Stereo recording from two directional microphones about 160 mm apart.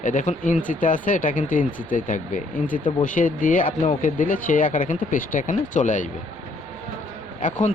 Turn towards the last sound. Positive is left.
turn(degrees=50)  # may be behind; listen again after turning